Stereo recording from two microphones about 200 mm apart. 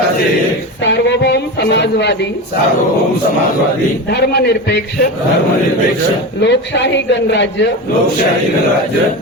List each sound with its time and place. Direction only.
0.9 s a sound: 60° left (ahead or behind)
4.1 s a man's voice: 55° left (ahead or behind)
6.4 s a man's voice: 65° left (ahead or behind)